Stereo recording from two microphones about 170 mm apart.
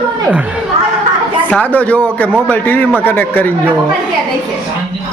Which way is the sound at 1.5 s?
10° left (ahead or behind).